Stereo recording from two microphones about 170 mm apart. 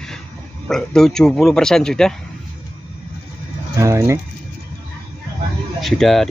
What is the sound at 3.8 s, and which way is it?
Speech, 15° right (ahead or behind).